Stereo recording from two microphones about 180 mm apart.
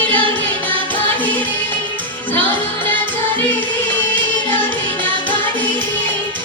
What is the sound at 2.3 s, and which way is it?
Music, 10° left (ahead or behind).